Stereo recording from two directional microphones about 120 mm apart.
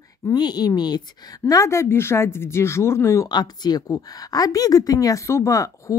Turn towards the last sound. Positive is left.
turn(degrees=25)  # may be behind; listen again after turning